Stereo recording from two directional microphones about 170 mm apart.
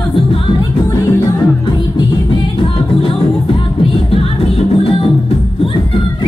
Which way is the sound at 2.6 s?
30° left (ahead or behind).